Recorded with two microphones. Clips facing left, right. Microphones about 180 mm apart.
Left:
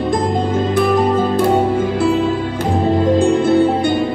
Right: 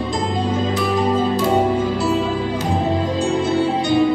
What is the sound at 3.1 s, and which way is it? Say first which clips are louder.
Music: left 6 dB; 55° left (ahead or behind).